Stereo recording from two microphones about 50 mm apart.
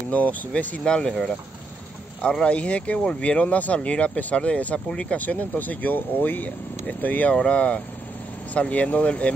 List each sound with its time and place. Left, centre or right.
0.1 s speech: left
0.8 s speech: centre
2.4 s speech: left
4.7 s speech: centre
5.1 s speech: left
7.3 s speech: left